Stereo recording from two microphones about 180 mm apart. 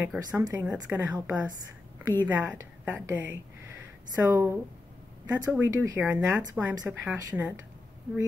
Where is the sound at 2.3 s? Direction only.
10° right (ahead or behind).